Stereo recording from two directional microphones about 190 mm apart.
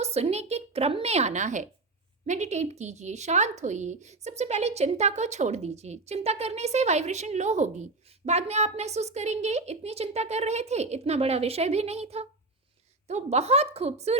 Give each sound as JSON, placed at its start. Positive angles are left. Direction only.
{"t": 0.0, "sound": "a woman's voice", "side_deg": -35}